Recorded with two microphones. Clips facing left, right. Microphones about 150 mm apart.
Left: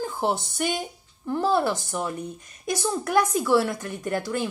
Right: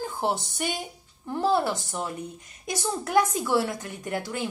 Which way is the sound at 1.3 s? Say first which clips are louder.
Left 1 dB; 15° right (ahead or behind).